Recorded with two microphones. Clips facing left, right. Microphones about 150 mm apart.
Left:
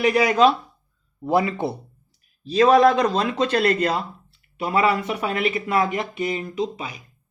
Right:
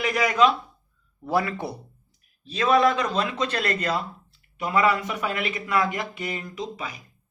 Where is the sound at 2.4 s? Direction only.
35° left (ahead or behind).